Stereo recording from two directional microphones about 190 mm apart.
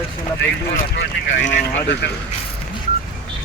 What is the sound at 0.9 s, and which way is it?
Speech, 60° left (ahead or behind).